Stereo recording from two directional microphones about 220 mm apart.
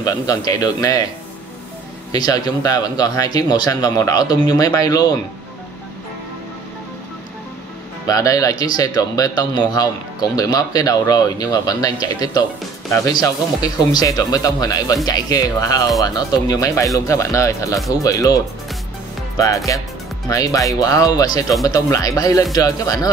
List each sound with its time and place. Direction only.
0.0 s a man's voice: 15° left (ahead or behind)
2.1 s a man's voice: 15° left (ahead or behind)
8.1 s a man's voice: 15° left (ahead or behind)